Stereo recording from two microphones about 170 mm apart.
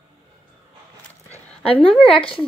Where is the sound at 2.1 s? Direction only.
30° left (ahead or behind).